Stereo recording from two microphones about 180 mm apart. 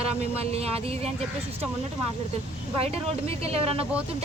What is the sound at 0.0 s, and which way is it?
Speech, 35° right (ahead or behind).